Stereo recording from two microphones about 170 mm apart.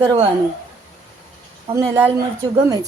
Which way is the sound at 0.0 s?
25° right (ahead or behind).